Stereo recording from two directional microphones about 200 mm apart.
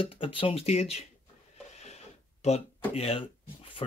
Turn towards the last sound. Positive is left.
turn(degrees=30)  # may be behind; listen again after turning